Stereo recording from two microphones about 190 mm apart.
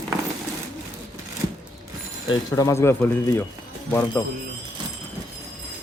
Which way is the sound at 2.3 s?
15° left (ahead or behind).